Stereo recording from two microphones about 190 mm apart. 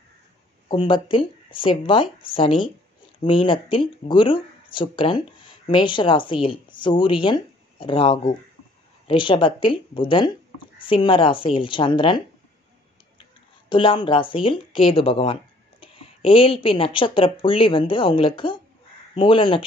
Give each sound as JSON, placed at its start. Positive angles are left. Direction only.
{"t": 0.7, "sound": "speech", "side_deg": 25}
{"t": 13.7, "sound": "speech", "side_deg": 25}